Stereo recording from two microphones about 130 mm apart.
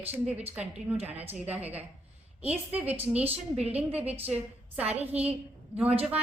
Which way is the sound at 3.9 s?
10° right (ahead or behind).